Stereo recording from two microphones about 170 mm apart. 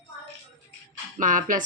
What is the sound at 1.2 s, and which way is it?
Speech, 50° right (ahead or behind).